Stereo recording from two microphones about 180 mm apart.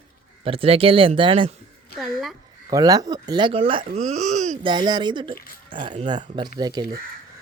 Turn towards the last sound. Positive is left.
turn(degrees=-20)  # may be behind; listen again after turning